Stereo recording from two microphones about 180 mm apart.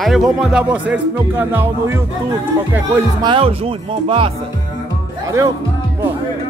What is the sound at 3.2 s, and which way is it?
Speech, 25° right (ahead or behind).